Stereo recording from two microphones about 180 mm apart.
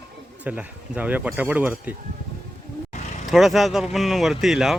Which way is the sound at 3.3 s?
Centre (ahead or behind).